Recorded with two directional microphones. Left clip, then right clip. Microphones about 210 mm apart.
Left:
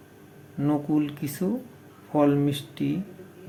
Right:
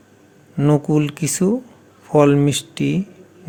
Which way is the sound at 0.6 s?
45° right (ahead or behind).